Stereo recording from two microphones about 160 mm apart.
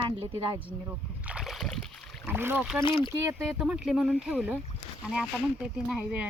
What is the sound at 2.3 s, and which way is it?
Speech, 15° right (ahead or behind).